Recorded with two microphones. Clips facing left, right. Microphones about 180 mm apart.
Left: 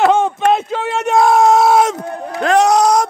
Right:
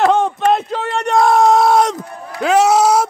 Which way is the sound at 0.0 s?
Centre (ahead or behind).